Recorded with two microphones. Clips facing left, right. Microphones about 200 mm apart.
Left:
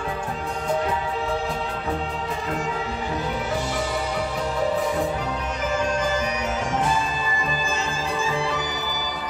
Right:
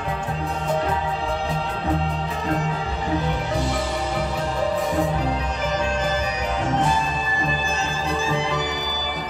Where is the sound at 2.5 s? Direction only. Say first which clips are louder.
Right 1 dB; 35° right (ahead or behind).